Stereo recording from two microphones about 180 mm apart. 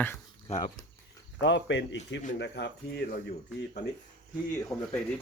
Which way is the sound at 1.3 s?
85° left.